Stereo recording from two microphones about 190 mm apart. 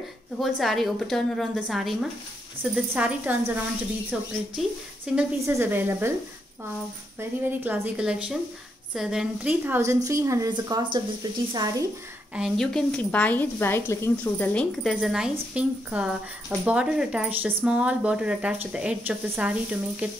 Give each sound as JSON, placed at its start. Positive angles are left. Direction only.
{"t": 0.4, "sound": "a woman's voice", "side_deg": 0}
{"t": 7.2, "sound": "speech", "side_deg": -10}
{"t": 12.4, "sound": "a woman's voice", "side_deg": 0}